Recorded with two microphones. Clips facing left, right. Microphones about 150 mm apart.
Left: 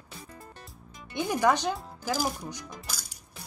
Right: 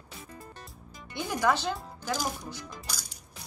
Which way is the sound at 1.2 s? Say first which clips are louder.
Left 2 dB; 15° left (ahead or behind).